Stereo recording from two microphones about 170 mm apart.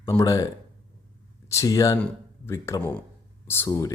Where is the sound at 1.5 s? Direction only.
20° left (ahead or behind).